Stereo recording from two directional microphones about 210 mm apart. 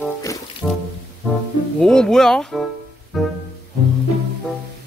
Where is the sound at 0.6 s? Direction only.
5° left (ahead or behind).